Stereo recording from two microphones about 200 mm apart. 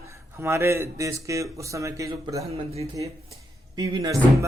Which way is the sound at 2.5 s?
30° right (ahead or behind).